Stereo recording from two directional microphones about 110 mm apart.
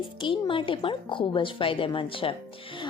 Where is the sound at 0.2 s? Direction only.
50° left (ahead or behind).